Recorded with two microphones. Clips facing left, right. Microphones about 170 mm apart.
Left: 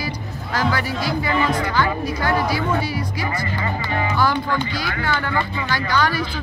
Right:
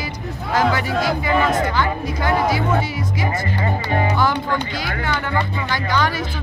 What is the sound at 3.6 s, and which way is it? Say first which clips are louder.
Speech: right 5 dB; 45° right (ahead or behind).